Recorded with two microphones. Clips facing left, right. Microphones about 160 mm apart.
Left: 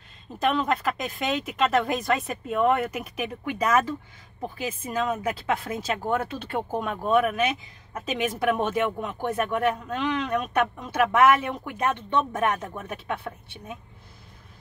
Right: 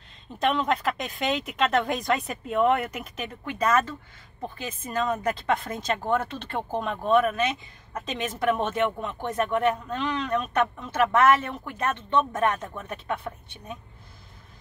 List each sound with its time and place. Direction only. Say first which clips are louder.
0.4 s speech: even; 5° left (ahead or behind)